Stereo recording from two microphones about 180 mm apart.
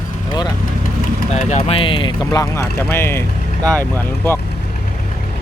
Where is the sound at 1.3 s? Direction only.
35° left (ahead or behind); by 4.4 s 10° left (ahead or behind).